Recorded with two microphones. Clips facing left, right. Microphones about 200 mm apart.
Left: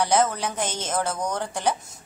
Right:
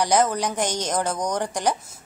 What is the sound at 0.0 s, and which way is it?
A woman's voice, 15° right (ahead or behind).